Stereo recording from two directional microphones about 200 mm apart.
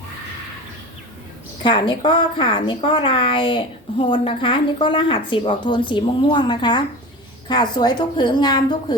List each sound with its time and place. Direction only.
1.6 s a woman's voice: 25° left (ahead or behind)